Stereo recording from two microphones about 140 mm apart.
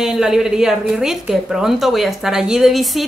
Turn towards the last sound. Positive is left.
turn(degrees=0)  # may be behind; listen again after turning